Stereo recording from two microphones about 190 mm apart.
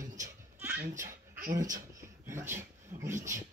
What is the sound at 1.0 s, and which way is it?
Speech, 45° right (ahead or behind).